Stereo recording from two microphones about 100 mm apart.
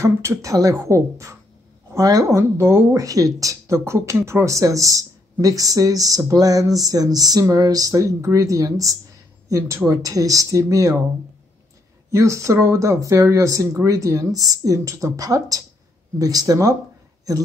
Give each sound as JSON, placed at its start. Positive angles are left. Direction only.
{"t": 0.0, "sound": "a woman's voice", "side_deg": -30}
{"t": 12.1, "sound": "speech", "side_deg": -30}